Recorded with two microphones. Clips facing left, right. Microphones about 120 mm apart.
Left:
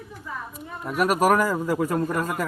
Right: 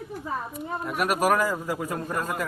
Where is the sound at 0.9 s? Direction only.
35° left (ahead or behind).